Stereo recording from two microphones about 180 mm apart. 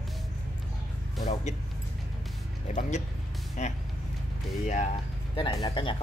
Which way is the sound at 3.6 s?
40° left (ahead or behind).